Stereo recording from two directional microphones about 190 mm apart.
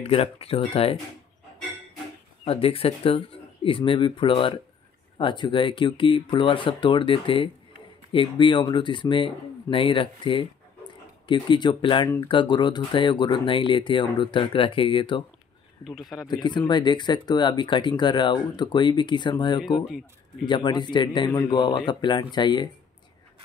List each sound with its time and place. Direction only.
0.0 s speech: 30° left (ahead or behind)
2.4 s speech: 30° left (ahead or behind)
15.8 s speech: centre (ahead or behind)
16.3 s speech: 25° left (ahead or behind)
19.6 s speech: centre (ahead or behind)
20.4 s speech: 25° left (ahead or behind)